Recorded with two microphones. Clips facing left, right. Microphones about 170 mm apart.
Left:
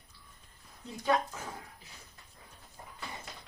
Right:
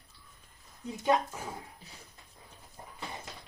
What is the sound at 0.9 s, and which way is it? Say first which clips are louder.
Speech: right 2 dB; 20° right (ahead or behind).